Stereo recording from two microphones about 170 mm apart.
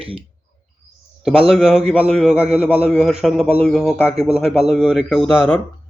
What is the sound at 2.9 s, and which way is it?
Speech, centre (ahead or behind).